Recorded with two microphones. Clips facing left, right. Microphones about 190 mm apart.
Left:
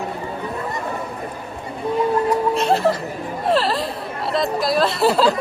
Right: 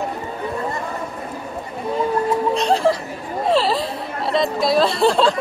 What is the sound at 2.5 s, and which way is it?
Chuckle, centre (ahead or behind).